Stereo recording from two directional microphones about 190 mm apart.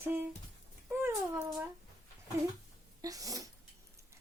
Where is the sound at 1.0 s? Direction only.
10° right (ahead or behind).